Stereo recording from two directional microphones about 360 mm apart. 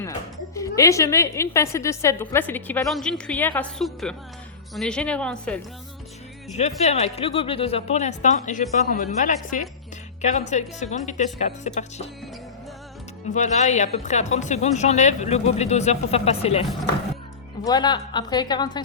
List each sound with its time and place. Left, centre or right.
0.0 s a woman's voice: centre
6.5 s a woman's voice: centre
13.3 s a woman's voice: centre